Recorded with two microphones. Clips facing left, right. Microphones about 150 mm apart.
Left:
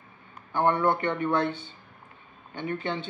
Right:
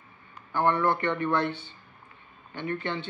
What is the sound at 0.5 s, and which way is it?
A man's voice, 20° left (ahead or behind).